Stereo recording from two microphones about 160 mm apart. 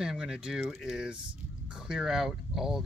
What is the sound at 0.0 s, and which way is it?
Speech, 5° right (ahead or behind).